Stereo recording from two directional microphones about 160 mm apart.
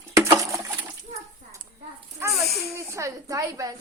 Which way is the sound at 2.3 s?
Centre (ahead or behind).